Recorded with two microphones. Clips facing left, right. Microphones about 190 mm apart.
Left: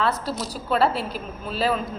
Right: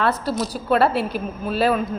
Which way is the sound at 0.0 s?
60° right (ahead or behind).